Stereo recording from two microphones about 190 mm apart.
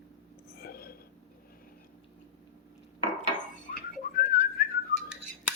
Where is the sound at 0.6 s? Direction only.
55° left (ahead or behind).